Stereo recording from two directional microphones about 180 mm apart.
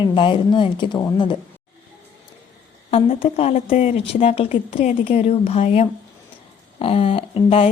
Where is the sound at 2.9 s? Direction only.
35° left (ahead or behind).